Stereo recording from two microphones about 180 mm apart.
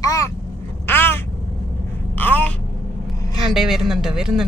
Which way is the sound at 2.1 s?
10° left (ahead or behind).